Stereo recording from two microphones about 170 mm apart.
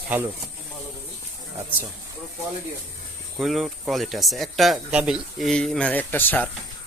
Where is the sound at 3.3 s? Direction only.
Centre (ahead or behind).